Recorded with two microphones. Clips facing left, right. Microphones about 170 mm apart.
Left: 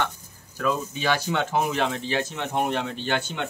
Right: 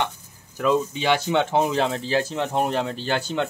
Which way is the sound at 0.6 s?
20° right (ahead or behind).